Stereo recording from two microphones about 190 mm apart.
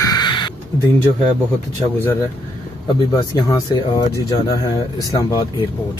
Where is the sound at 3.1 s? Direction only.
20° left (ahead or behind).